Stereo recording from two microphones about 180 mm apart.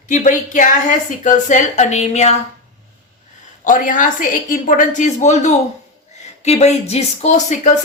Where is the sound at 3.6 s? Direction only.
45° left (ahead or behind).